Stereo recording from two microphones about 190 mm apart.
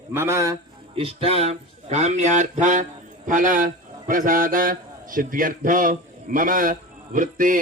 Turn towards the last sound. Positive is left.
turn(degrees=-45)  # may be behind; listen again after turning